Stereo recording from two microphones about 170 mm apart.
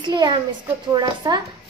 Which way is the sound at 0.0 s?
25° right (ahead or behind).